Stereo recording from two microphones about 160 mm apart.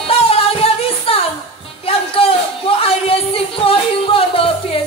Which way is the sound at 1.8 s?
35° left (ahead or behind).